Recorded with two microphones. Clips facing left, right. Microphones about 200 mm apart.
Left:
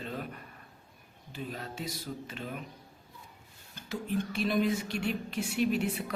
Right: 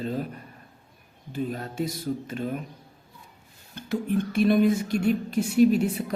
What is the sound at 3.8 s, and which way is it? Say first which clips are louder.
Speech: right 7 dB; 55° right (ahead or behind).